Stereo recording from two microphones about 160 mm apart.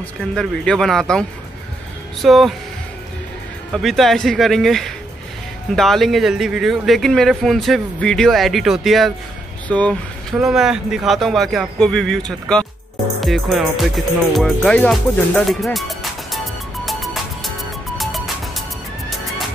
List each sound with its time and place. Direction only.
0.2 s speech: 5° left (ahead or behind)
2.2 s speech: centre (ahead or behind)
3.7 s speech: centre (ahead or behind)
17.9 s music: centre (ahead or behind)